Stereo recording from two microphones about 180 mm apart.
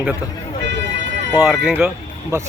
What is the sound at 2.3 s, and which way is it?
Speech, 15° right (ahead or behind).